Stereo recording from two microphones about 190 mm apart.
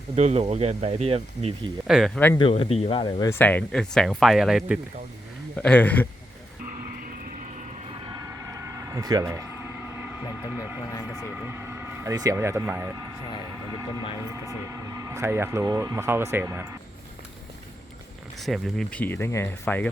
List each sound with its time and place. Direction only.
0.2 s speech: 35° right (ahead or behind)
1.9 s speech: centre (ahead or behind)
2.4 s speech: 30° left (ahead or behind)
3.2 s speech: 10° left (ahead or behind)
8.0 s a sound: 20° right (ahead or behind)
11.2 s speech: centre (ahead or behind)
11.4 s speech: 10° right (ahead or behind)
13.7 s vehicle: 20° right (ahead or behind)
14.2 s speech: 15° right (ahead or behind)
18.3 s speech: centre (ahead or behind)